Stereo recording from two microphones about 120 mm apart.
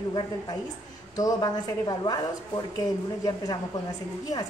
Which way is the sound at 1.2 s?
30° left (ahead or behind).